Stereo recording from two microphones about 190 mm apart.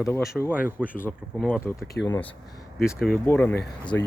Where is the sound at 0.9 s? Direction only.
10° left (ahead or behind).